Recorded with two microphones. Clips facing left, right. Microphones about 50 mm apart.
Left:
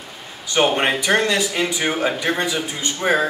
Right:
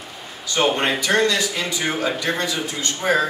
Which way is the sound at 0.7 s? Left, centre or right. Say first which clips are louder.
Left 1 dB; centre.